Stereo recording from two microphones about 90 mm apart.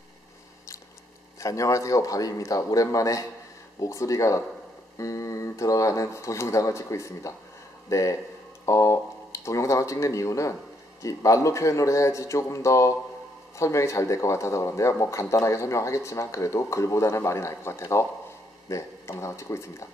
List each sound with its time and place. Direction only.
1.4 s speech: 35° left (ahead or behind)